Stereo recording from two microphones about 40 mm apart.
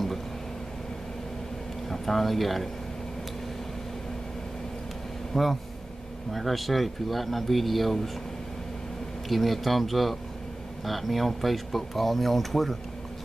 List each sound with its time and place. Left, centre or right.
1.9 s speech: centre
5.3 s speech: centre
9.3 s speech: centre